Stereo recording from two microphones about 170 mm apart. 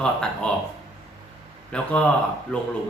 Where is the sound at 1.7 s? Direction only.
5° left (ahead or behind).